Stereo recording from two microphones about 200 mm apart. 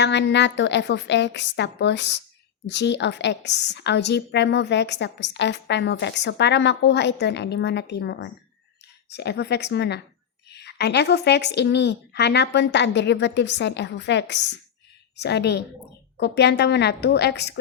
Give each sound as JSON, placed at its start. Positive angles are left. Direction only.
{"t": 0.0, "sound": "a woman's voice", "side_deg": 60}